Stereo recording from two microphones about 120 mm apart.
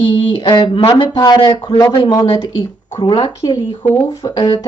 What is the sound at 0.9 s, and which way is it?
A man's voice, 35° left (ahead or behind).